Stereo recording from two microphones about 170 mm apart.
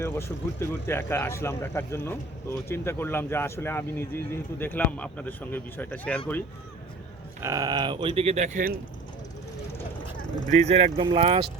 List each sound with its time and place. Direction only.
0.0 s speech: 15° left (ahead or behind)
7.4 s speech: 20° right (ahead or behind); by 8.7 s 45° right (ahead or behind)
10.6 s speech: 40° right (ahead or behind)